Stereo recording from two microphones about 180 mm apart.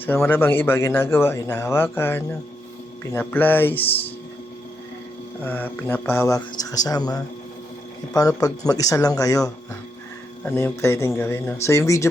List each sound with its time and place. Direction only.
0.2 s a man's voice: 10° left (ahead or behind)
5.4 s a man's voice: 10° left (ahead or behind)
8.4 s a man's voice: 20° left (ahead or behind)